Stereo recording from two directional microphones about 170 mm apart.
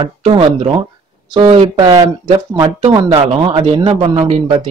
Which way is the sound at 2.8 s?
30° right (ahead or behind).